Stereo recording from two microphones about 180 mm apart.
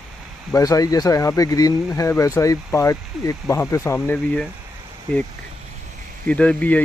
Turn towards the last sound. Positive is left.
turn(degrees=10)  # may be behind; listen again after turning